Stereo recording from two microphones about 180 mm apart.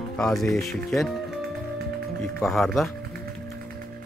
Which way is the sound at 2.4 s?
Centre (ahead or behind).